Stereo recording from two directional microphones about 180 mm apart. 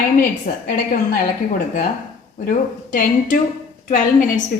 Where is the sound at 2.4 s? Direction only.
50° left (ahead or behind).